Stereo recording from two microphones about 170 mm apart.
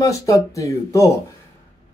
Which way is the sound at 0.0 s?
20° left (ahead or behind).